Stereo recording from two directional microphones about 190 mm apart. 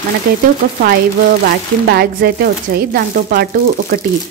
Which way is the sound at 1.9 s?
55° right (ahead or behind).